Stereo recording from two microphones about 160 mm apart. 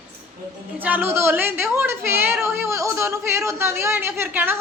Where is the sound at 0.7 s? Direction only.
10° right (ahead or behind).